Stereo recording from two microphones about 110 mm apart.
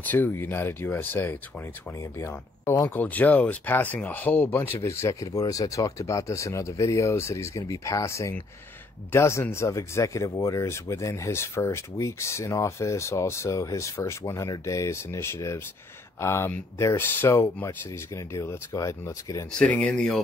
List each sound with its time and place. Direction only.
0.0 s speech: 15° left (ahead or behind)
19.6 s speech: 10° left (ahead or behind)